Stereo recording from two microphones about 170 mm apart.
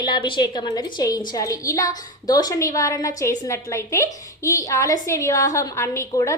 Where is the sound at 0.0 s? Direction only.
30° left (ahead or behind).